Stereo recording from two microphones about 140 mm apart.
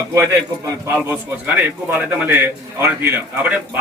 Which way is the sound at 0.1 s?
20° right (ahead or behind).